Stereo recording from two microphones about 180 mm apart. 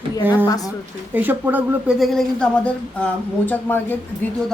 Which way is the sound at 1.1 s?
10° right (ahead or behind).